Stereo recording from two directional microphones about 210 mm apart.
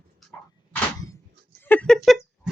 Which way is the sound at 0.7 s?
10° left (ahead or behind).